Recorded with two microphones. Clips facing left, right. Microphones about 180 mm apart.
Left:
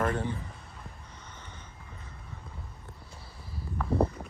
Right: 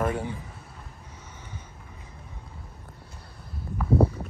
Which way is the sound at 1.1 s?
10° right (ahead or behind).